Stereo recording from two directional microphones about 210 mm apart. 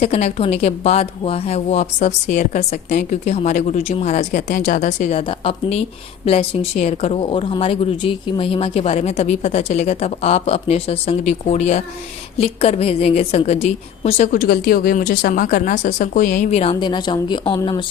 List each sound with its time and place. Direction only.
0.0 s speech: 30° left (ahead or behind)
14.3 s speech: 50° left (ahead or behind); by 17.8 s 20° left (ahead or behind)